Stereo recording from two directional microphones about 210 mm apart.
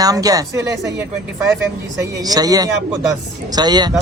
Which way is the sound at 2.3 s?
15° right (ahead or behind).